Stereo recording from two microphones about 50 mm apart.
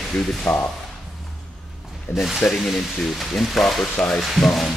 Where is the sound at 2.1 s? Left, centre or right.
Centre.